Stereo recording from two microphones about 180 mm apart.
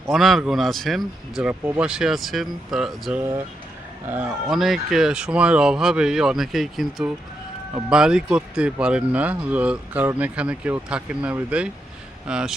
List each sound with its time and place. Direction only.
0.1 s speech: centre (ahead or behind)